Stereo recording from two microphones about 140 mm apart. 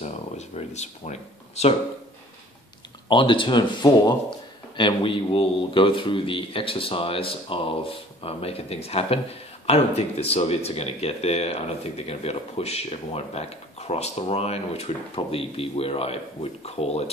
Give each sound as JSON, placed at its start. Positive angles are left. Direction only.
{"t": 0.0, "sound": "speech", "side_deg": 55}
{"t": 3.1, "sound": "speech", "side_deg": 35}